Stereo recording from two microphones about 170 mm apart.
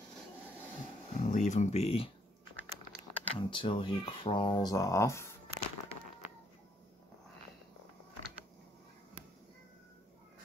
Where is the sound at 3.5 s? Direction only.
30° left (ahead or behind).